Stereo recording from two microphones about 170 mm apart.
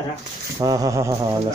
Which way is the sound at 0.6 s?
20° right (ahead or behind).